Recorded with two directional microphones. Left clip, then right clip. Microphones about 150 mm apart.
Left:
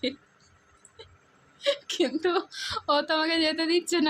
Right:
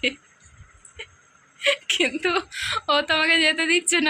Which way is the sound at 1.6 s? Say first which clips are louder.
Right 6 dB; 30° left (ahead or behind).